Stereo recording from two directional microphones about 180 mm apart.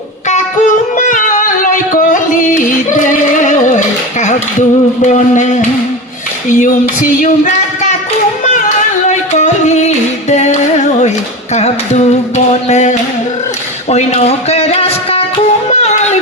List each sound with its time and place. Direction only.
0.3 s music: 45° left (ahead or behind)
5.0 s speech: 40° left (ahead or behind)
6.6 s a sound: 45° left (ahead or behind)
9.0 s music: 40° left (ahead or behind)
11.5 s singing: 40° left (ahead or behind)
13.9 s a sound: 35° left (ahead or behind)
15.7 s music: 35° left (ahead or behind)